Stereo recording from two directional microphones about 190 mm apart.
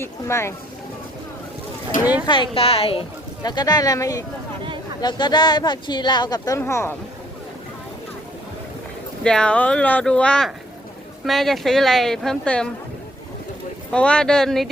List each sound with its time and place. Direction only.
0.0 s speech: 15° left (ahead or behind)
2.2 s a woman's voice: 25° left (ahead or behind)
9.2 s a woman's voice: 5° left (ahead or behind)
13.9 s a woman's voice: 5° left (ahead or behind)